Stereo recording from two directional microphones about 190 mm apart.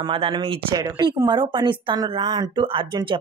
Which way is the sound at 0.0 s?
25° right (ahead or behind).